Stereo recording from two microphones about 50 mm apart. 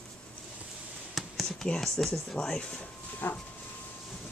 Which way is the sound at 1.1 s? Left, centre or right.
Centre.